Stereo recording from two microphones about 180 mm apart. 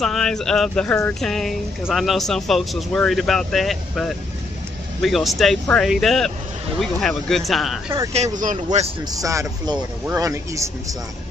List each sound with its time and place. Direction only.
0.0 s speech: 5° left (ahead or behind)
5.0 s speech: centre (ahead or behind)
8.1 s speech: 40° right (ahead or behind)
9.1 s speech: 20° right (ahead or behind)